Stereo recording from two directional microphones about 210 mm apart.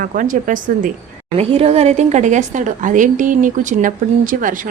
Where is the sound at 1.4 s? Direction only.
25° right (ahead or behind).